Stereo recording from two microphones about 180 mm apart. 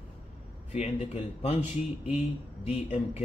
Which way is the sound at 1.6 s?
10° right (ahead or behind).